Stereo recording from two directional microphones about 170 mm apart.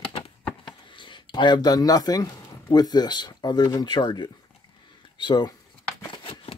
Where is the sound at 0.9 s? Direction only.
30° left (ahead or behind).